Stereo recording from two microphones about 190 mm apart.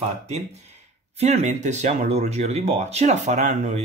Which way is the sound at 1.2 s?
35° right (ahead or behind).